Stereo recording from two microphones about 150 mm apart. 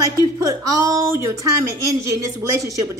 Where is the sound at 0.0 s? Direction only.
20° right (ahead or behind).